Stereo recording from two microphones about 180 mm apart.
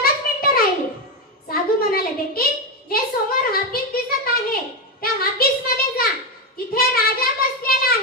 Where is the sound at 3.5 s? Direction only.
55° left (ahead or behind).